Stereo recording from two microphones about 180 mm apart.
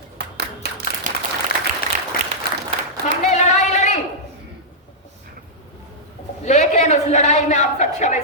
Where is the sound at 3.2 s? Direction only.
40° left (ahead or behind).